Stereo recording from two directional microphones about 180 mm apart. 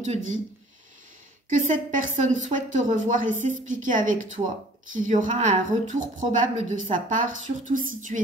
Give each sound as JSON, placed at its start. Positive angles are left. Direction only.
{"t": 0.0, "sound": "speech", "side_deg": -40}
{"t": 1.5, "sound": "a woman's voice", "side_deg": -45}
{"t": 8.1, "sound": "speech", "side_deg": -35}